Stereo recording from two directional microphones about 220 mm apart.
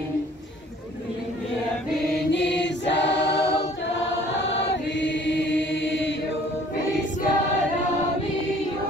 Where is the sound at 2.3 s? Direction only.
55° left (ahead or behind).